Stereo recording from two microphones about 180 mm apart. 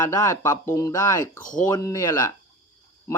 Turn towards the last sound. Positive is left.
turn(degrees=15)  # may be behind; listen again after turning